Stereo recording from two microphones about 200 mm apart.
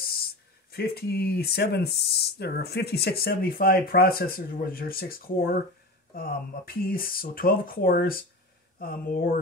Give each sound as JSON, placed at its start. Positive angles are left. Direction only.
{"t": 0.7, "sound": "speech", "side_deg": 50}